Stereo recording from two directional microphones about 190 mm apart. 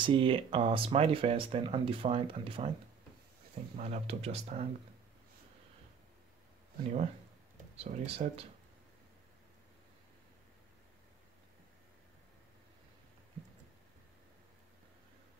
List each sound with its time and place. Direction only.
0.0 s speech: 25° right (ahead or behind)
3.7 s speech: 35° right (ahead or behind)
7.7 s speech: 30° right (ahead or behind)